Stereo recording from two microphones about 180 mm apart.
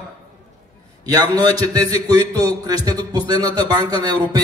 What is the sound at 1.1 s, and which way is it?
A man's voice, 20° right (ahead or behind).